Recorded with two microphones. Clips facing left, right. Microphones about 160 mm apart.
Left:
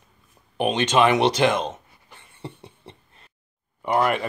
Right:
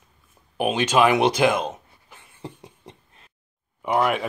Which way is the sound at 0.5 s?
5° right (ahead or behind).